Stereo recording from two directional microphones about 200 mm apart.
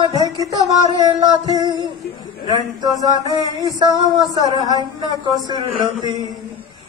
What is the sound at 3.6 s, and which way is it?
A woman's voice, 15° right (ahead or behind).